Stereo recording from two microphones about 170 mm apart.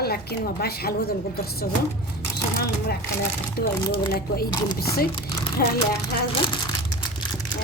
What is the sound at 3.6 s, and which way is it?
Speech, 60° left (ahead or behind).